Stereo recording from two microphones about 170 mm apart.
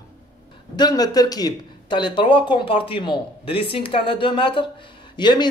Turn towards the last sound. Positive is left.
turn(degrees=25)  # may be behind; listen again after turning